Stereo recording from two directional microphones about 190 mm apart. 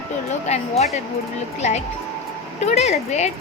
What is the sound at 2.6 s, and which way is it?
Speech, 35° left (ahead or behind).